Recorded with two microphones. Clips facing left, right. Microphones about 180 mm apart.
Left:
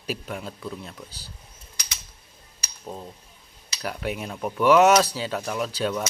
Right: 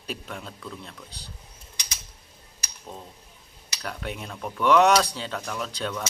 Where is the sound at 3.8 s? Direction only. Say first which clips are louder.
Left 4 dB; 10° left (ahead or behind).